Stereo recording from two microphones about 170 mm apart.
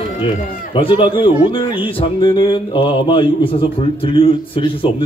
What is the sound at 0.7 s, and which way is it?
Speech, 30° left (ahead or behind).